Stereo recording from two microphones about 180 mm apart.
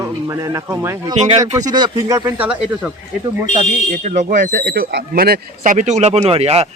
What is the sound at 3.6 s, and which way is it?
Speech, 40° right (ahead or behind).